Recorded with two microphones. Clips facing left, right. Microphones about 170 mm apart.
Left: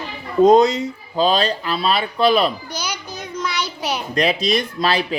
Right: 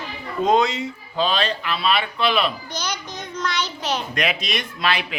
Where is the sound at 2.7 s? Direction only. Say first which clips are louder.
Left 1 dB; 10° left (ahead or behind).